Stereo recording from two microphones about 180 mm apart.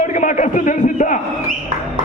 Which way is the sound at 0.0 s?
45° left (ahead or behind).